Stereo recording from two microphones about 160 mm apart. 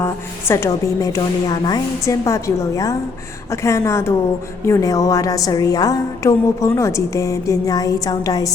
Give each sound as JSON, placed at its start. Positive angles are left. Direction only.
{"t": 0.0, "sound": "a woman's voice", "side_deg": 15}